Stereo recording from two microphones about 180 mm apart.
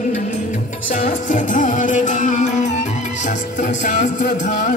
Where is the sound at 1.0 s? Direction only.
45° left (ahead or behind).